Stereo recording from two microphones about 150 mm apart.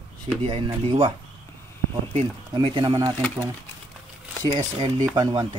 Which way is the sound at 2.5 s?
30° right (ahead or behind).